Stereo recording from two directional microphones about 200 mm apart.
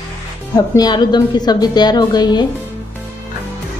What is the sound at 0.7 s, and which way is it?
A woman's voice, 20° left (ahead or behind).